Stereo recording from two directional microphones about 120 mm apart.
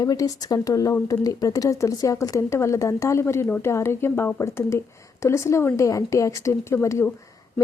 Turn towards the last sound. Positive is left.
turn(degrees=25)  # may be behind; listen again after turning